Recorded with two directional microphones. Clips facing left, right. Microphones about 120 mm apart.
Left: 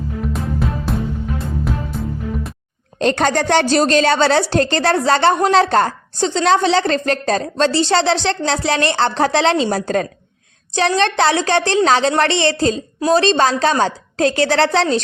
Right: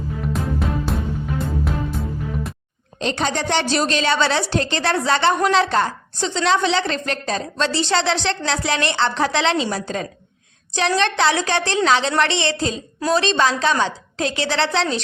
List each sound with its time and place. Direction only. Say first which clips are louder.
0.6 s music: left 2 dB; centre (ahead or behind)
3.0 s a woman's voice: left 6 dB; 50° left (ahead or behind)
10.8 s a woman's voice: left 3 dB; 35° left (ahead or behind)